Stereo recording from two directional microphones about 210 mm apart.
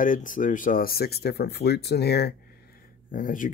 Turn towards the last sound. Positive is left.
turn(degrees=40)  # may be behind; listen again after turning